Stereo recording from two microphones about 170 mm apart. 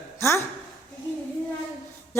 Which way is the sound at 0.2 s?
15° left (ahead or behind).